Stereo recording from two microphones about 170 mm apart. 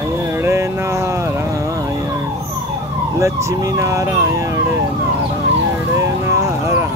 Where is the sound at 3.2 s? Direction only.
15° right (ahead or behind).